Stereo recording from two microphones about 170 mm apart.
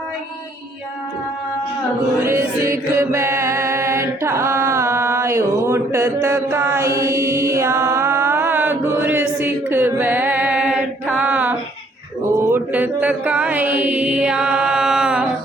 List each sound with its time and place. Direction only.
2.2 s music: 15° right (ahead or behind)
6.2 s mantra: 15° right (ahead or behind)
11.2 s music: 10° right (ahead or behind)
12.3 s mantra: 15° right (ahead or behind)